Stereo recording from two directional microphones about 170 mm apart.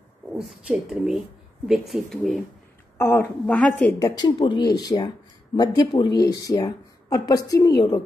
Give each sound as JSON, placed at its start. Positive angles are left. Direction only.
{"t": 0.3, "sound": "speech", "side_deg": -5}
{"t": 3.0, "sound": "a woman's voice", "side_deg": 15}
{"t": 4.1, "sound": "a woman's voice", "side_deg": 25}